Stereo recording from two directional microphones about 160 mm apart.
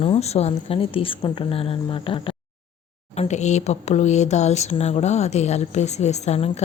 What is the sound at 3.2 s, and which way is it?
Speech, 45° left (ahead or behind).